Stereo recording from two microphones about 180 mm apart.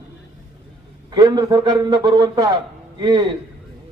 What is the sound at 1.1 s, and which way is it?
Speech, 25° right (ahead or behind).